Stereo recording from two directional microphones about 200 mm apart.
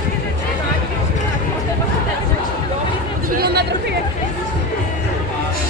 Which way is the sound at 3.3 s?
50° right (ahead or behind).